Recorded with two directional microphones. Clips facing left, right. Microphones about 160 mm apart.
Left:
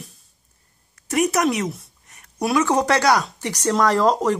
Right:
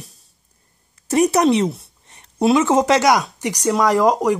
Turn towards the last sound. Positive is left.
turn(degrees=-10)  # may be behind; listen again after turning